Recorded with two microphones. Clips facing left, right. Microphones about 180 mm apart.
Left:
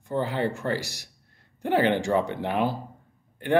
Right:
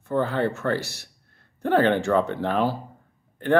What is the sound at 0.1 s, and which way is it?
Speech, 15° left (ahead or behind).